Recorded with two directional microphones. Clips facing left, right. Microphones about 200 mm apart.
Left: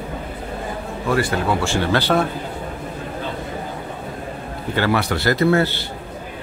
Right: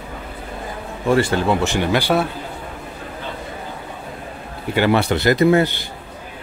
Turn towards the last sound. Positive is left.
turn(degrees=-15)  # may be behind; listen again after turning